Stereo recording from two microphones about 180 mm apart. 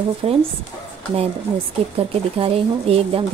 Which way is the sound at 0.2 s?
30° right (ahead or behind).